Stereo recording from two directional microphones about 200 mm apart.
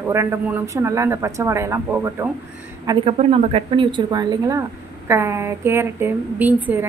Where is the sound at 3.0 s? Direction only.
30° right (ahead or behind).